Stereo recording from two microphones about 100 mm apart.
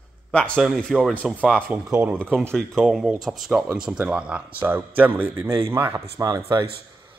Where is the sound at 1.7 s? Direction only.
15° right (ahead or behind).